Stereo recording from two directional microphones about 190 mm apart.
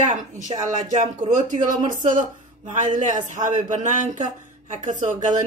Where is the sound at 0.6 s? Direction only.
40° right (ahead or behind).